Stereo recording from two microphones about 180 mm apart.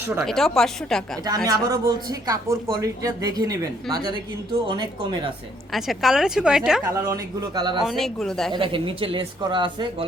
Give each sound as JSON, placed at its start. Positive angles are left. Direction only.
{"t": 0.2, "sound": "speech", "side_deg": 0}
{"t": 1.5, "sound": "speech", "side_deg": -20}
{"t": 4.7, "sound": "speech", "side_deg": -25}
{"t": 5.7, "sound": "speech", "side_deg": 0}
{"t": 6.8, "sound": "speech", "side_deg": -20}
{"t": 7.8, "sound": "speech", "side_deg": 0}
{"t": 8.5, "sound": "speech", "side_deg": -30}